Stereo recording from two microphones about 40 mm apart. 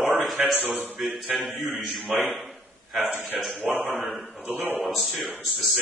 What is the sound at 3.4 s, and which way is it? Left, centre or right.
Speech, centre.